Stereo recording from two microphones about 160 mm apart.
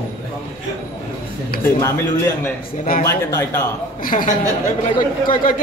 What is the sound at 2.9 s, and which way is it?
Speech, 65° left (ahead or behind).